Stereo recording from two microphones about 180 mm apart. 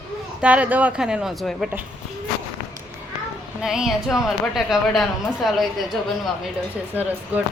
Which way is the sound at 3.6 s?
Centre (ahead or behind).